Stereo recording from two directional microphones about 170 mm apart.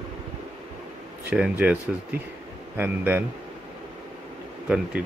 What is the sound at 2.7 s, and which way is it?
Speech, 10° right (ahead or behind).